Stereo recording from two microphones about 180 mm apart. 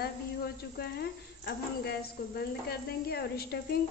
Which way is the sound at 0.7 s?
60° left (ahead or behind).